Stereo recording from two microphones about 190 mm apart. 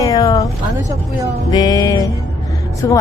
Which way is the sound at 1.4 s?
20° left (ahead or behind).